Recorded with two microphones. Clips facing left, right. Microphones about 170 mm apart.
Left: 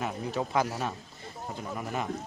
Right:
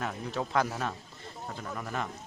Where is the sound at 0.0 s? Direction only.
5° left (ahead or behind).